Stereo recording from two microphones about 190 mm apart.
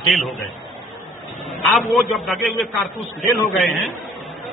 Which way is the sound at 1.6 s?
Centre (ahead or behind).